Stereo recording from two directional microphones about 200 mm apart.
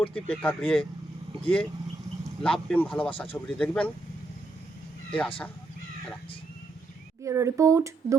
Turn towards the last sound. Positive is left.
turn(degrees=-15)  # may be behind; listen again after turning